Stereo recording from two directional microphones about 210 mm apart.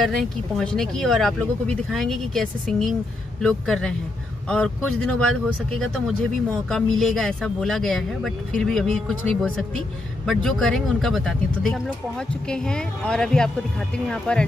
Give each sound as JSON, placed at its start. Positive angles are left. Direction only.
{"t": 0.0, "sound": "speech", "side_deg": 0}